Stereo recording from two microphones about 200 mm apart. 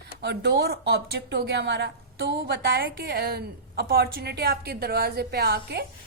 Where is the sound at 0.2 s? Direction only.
55° right (ahead or behind).